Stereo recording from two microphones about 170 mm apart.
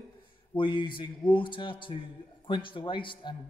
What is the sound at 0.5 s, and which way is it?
A man's voice, 30° left (ahead or behind).